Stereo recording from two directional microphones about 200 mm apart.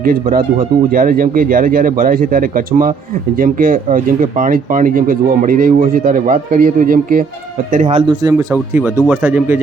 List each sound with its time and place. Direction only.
0.0 s speech: 45° right (ahead or behind)
8.0 s a man's voice: 20° right (ahead or behind)